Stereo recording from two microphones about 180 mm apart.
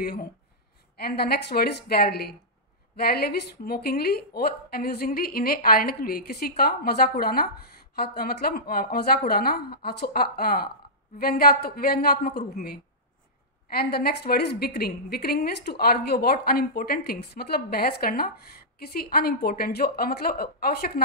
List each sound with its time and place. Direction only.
0.9 s a woman's voice: 60° left (ahead or behind)
13.7 s a woman's voice: 60° left (ahead or behind)